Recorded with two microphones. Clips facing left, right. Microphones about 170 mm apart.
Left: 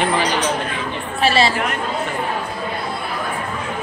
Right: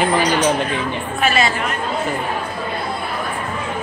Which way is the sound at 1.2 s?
30° left (ahead or behind).